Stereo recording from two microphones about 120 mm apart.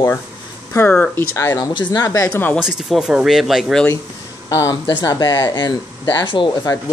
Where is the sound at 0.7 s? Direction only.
15° left (ahead or behind).